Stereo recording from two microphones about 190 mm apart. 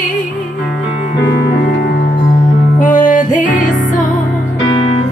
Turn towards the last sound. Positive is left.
turn(degrees=45)  # may be behind; listen again after turning